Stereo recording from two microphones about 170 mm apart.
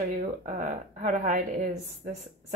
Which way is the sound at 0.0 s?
50° right (ahead or behind).